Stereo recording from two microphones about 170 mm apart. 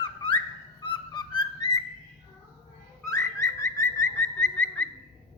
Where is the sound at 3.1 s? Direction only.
20° left (ahead or behind).